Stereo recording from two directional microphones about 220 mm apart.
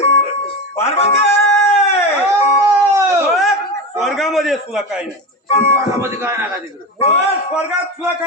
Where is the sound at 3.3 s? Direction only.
Centre (ahead or behind).